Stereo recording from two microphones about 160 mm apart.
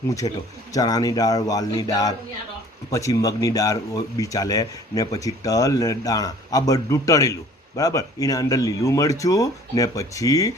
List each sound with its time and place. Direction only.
0.1 s speech: 20° left (ahead or behind)